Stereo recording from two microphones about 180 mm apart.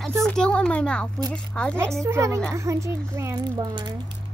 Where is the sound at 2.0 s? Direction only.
15° right (ahead or behind).